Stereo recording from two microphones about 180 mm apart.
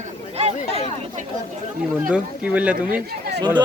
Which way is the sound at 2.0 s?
5° right (ahead or behind).